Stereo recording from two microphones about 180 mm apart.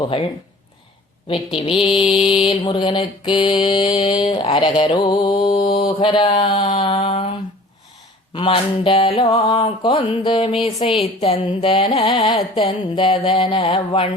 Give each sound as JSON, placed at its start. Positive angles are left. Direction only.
{"t": 0.0, "sound": "mantra", "side_deg": 30}
{"t": 1.5, "sound": "mantra", "side_deg": 30}
{"t": 8.3, "sound": "mantra", "side_deg": 30}